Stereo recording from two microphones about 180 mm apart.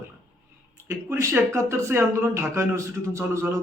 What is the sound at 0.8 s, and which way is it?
Speech, 15° right (ahead or behind).